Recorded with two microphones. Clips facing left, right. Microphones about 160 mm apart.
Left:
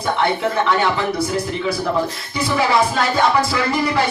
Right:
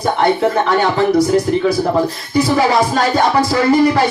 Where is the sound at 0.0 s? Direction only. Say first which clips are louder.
Right 5 dB; 45° right (ahead or behind).